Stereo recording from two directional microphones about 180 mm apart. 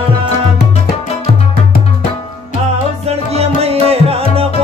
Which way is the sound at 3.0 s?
35° right (ahead or behind).